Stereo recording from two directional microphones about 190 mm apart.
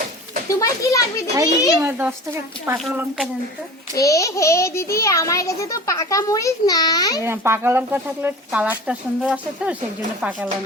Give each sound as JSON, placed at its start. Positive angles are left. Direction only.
{"t": 0.5, "sound": "a child's voice", "side_deg": 15}
{"t": 1.8, "sound": "speech", "side_deg": -10}
{"t": 3.9, "sound": "a child's voice", "side_deg": 15}
{"t": 7.2, "sound": "speech", "side_deg": -15}